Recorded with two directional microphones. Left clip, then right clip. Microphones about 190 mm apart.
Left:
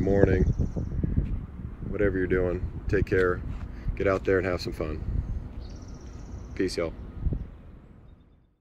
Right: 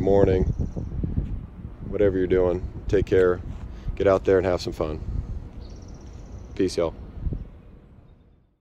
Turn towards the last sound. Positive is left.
turn(degrees=-10)  # may be behind; listen again after turning